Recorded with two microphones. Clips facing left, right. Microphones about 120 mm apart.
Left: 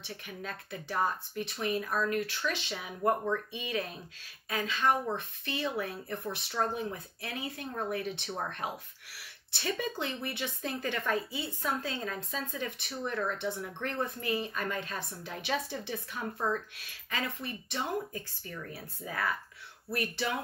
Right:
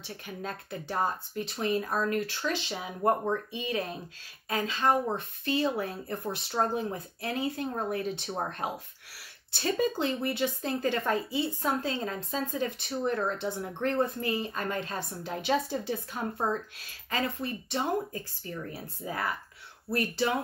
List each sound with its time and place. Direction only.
0.0 s speech: 35° right (ahead or behind)